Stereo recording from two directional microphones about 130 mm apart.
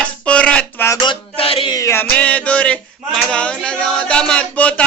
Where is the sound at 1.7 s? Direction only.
25° left (ahead or behind).